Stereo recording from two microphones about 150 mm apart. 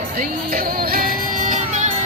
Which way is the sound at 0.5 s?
80° right.